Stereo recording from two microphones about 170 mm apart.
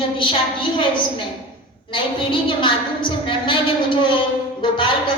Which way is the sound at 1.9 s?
30° left (ahead or behind).